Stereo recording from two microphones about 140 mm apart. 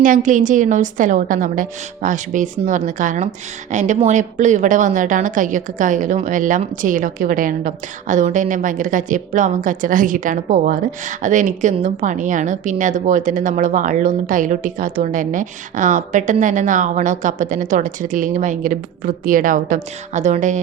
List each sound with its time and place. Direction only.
0.0 s a woman's voice: 70° right (ahead or behind)